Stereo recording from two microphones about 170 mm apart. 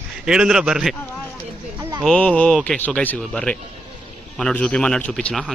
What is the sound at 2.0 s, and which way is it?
Speech, 5° left (ahead or behind).